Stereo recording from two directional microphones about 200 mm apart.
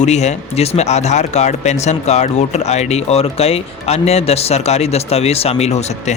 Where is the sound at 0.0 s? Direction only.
35° left (ahead or behind).